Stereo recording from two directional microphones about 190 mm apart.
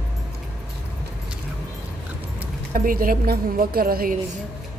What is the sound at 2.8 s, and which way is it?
A woman's voice, 50° right (ahead or behind).